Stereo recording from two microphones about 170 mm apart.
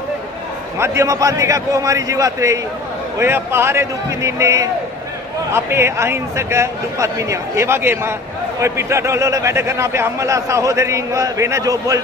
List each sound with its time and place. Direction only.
0.7 s a man's voice: 15° right (ahead or behind)